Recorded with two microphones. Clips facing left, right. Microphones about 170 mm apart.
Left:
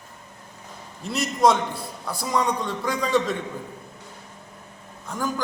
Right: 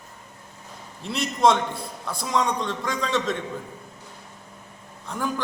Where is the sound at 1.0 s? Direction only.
Centre (ahead or behind).